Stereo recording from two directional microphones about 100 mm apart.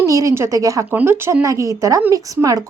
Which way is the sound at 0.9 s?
20° right (ahead or behind).